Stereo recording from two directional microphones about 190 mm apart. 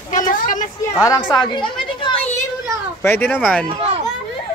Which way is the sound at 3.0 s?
10° left (ahead or behind).